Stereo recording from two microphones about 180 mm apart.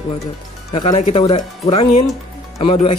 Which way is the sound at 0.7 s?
30° left (ahead or behind).